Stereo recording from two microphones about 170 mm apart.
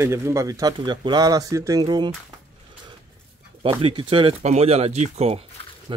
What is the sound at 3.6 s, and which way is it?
Speech, 30° right (ahead or behind).